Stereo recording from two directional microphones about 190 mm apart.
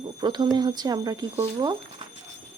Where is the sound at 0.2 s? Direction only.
20° right (ahead or behind).